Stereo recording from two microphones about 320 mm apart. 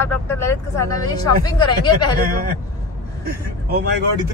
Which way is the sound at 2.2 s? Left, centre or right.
Right.